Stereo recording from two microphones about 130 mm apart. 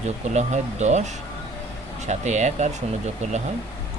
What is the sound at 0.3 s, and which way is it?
Speech, 60° right (ahead or behind).